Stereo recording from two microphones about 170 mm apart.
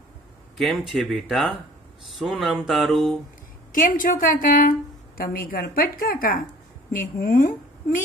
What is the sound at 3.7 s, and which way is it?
A woman's voice, 50° left (ahead or behind).